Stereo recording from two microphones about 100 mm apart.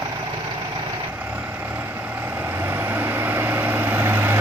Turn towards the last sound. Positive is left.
turn(degrees=-20)  # may be behind; listen again after turning